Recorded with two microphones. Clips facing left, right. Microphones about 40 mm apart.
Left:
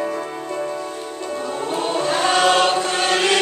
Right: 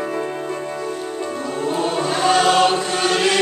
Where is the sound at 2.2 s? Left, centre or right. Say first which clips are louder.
Right 2 dB; centre.